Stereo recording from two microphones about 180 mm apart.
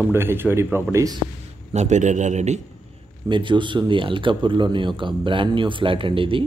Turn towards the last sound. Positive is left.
turn(degrees=-30)  # may be behind; listen again after turning